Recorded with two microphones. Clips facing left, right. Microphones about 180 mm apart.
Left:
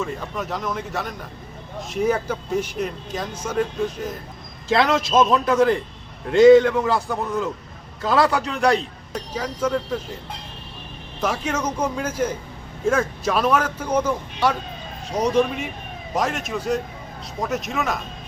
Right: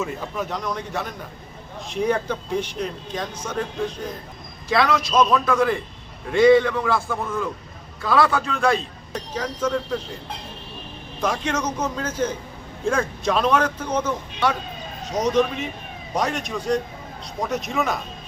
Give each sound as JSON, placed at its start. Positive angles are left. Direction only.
{"t": 0.0, "sound": "speech", "side_deg": 0}
{"t": 4.7, "sound": "a man's voice", "side_deg": 20}
{"t": 11.2, "sound": "a man's voice", "side_deg": 10}